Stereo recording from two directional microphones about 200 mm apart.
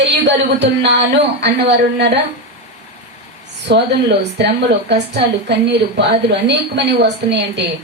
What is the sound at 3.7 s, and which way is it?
Speech, 60° right (ahead or behind).